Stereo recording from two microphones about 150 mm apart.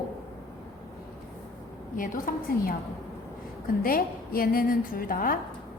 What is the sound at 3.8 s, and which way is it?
A woman's voice, 75° left (ahead or behind).